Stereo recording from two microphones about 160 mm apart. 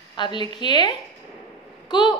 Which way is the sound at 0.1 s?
30° left (ahead or behind).